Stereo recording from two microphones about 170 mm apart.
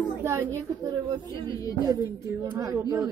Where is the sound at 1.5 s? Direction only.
20° left (ahead or behind).